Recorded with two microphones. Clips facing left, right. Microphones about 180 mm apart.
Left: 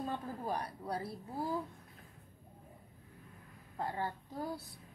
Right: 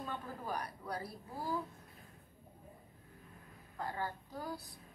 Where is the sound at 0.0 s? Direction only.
30° left (ahead or behind).